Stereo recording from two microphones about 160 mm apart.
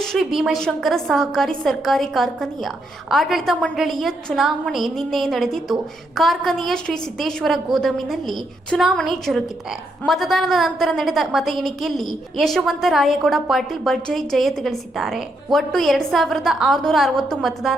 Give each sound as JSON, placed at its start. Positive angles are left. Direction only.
{"t": 0.0, "sound": "a woman's voice", "side_deg": 0}